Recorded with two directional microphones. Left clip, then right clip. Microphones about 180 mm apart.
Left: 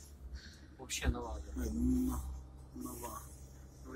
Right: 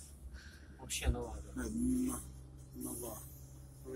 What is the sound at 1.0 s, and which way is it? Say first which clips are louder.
Speech: left 1 dB; 10° right (ahead or behind).